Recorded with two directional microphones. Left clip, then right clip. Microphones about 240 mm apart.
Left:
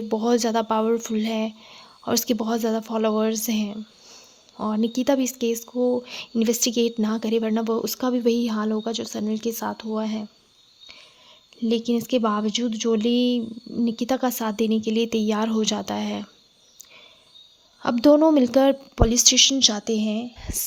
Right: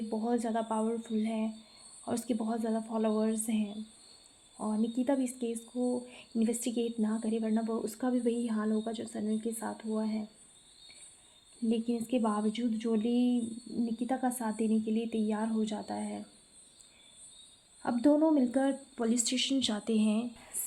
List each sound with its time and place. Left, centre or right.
0.1 s speech: left
11.7 s speech: left
17.8 s a woman's voice: left; by 20.2 s centre